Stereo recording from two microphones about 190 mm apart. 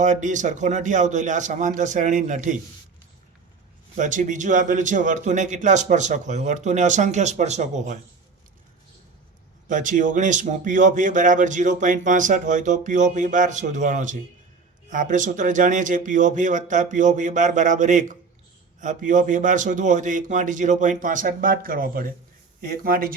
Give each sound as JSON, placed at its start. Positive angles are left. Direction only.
{"t": 0.0, "sound": "speech", "side_deg": -40}
{"t": 3.9, "sound": "speech", "side_deg": -40}
{"t": 9.6, "sound": "speech", "side_deg": -40}